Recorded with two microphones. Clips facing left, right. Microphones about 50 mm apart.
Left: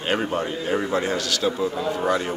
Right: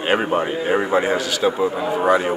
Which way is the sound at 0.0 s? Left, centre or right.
Right.